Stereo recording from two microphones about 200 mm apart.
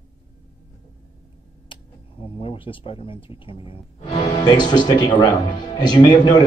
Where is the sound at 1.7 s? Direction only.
25° left (ahead or behind).